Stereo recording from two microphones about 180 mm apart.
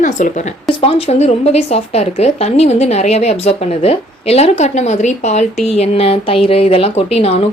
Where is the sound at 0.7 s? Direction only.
30° left (ahead or behind).